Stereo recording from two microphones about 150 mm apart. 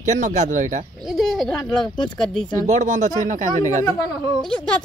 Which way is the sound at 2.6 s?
55° right (ahead or behind).